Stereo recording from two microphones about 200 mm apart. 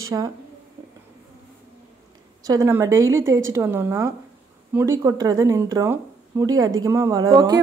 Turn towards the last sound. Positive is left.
turn(degrees=-20)  # may be behind; listen again after turning